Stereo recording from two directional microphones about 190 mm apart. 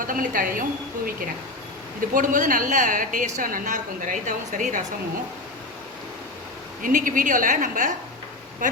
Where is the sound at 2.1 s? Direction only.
45° right (ahead or behind).